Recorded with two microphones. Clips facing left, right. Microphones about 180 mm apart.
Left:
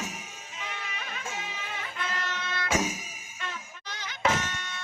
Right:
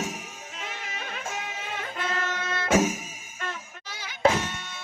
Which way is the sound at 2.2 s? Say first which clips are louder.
Right 4 dB; 45° right (ahead or behind).